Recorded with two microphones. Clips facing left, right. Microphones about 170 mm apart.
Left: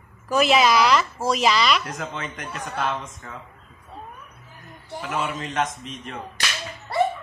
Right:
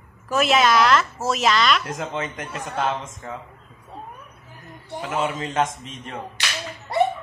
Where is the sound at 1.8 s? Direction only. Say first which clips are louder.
Right 3 dB; 25° right (ahead or behind).